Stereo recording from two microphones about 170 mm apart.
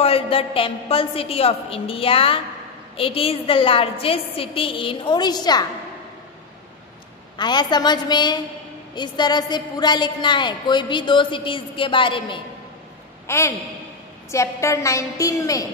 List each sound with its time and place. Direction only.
0.0 s a woman's voice: 35° left (ahead or behind)
7.3 s a woman's voice: 25° left (ahead or behind)
13.3 s a woman's voice: 15° left (ahead or behind)